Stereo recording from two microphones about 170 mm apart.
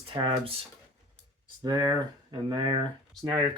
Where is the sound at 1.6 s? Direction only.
20° right (ahead or behind).